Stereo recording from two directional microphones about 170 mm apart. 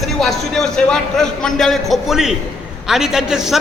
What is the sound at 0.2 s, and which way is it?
A man's voice, centre (ahead or behind).